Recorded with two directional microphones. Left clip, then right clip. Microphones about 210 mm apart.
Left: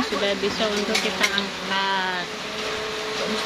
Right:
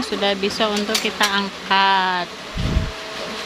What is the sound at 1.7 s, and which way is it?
Speech, 25° right (ahead or behind).